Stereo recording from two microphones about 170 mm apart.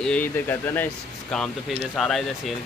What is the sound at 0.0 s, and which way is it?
Speech, 10° left (ahead or behind).